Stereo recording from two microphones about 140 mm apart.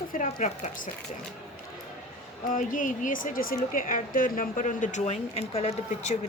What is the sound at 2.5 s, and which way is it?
Speech, 70° left (ahead or behind).